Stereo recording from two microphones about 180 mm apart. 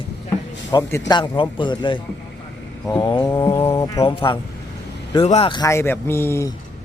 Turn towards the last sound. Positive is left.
turn(degrees=15)  # may be behind; listen again after turning